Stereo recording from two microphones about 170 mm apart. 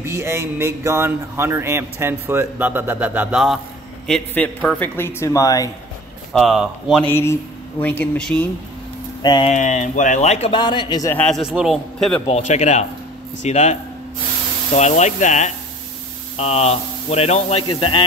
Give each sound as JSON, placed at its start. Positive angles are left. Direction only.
{"t": 0.0, "sound": "a man's voice", "side_deg": -15}
{"t": 4.1, "sound": "a man's voice", "side_deg": 10}
{"t": 6.4, "sound": "a man's voice", "side_deg": 0}
{"t": 7.1, "sound": "a man's voice", "side_deg": 15}
{"t": 9.2, "sound": "speech", "side_deg": 25}
{"t": 9.5, "sound": "speech", "side_deg": 45}
{"t": 10.5, "sound": "speech", "side_deg": 25}
{"t": 11.1, "sound": "a man's voice", "side_deg": 5}
{"t": 12.3, "sound": "speech", "side_deg": 40}